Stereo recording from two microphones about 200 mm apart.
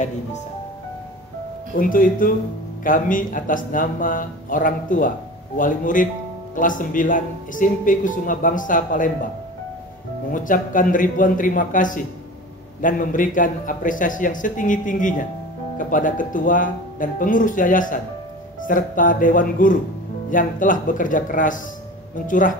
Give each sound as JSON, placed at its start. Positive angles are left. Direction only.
{"t": 1.8, "sound": "a man's voice", "side_deg": 45}
{"t": 10.3, "sound": "a man's voice", "side_deg": 40}